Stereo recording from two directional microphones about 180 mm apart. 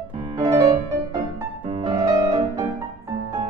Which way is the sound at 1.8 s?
25° right (ahead or behind).